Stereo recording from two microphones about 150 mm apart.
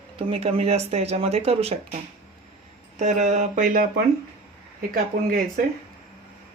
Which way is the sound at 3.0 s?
50° right (ahead or behind).